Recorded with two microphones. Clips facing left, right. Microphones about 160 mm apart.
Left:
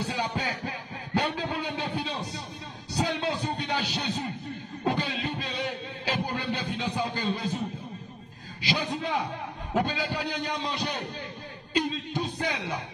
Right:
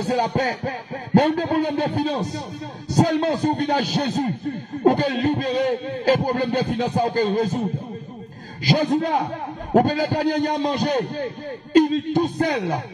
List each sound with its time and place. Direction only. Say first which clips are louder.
0.0 s speech: right 9 dB; 45° right (ahead or behind)
8.6 s speech: right 10 dB; 45° right (ahead or behind)